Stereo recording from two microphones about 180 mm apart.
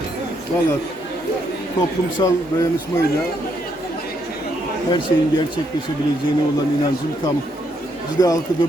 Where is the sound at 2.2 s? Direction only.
20° left (ahead or behind).